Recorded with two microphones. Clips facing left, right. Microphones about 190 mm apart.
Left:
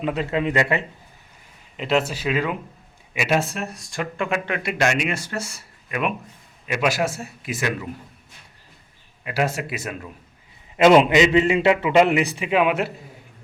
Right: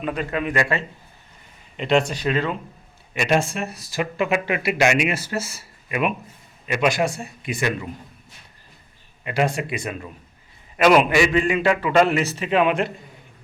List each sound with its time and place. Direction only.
0.0 s a man's voice: 25° left (ahead or behind)
1.7 s speech: 5° left (ahead or behind)
9.2 s speech: 5° left (ahead or behind)
10.8 s a man's voice: 25° left (ahead or behind); by 12.9 s 5° left (ahead or behind)